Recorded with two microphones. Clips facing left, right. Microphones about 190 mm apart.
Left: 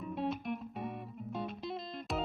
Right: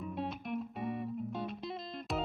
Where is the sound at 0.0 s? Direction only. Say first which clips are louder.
Left 3 dB; centre (ahead or behind).